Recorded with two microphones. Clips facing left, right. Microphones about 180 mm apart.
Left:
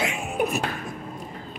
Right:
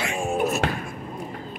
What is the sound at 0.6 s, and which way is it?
Speech, 90° right.